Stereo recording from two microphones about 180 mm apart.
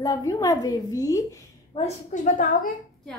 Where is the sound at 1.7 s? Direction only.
40° left (ahead or behind).